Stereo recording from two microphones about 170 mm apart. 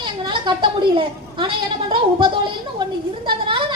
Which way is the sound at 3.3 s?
30° right (ahead or behind).